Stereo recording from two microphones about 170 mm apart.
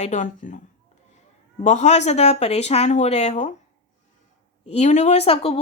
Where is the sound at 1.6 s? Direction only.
45° left (ahead or behind).